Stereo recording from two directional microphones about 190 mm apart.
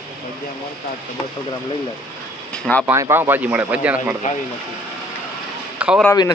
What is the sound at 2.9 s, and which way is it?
Speech, 15° right (ahead or behind).